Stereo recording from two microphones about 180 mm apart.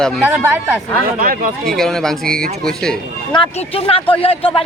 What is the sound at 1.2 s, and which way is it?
Speech, 55° right (ahead or behind).